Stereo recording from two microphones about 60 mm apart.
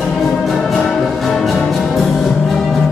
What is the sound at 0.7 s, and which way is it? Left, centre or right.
Music, centre.